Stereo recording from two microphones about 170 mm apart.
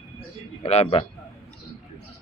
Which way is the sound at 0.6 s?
40° left (ahead or behind).